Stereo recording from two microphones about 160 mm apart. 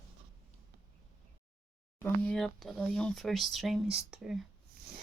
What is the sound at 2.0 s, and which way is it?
Speech, 5° left (ahead or behind).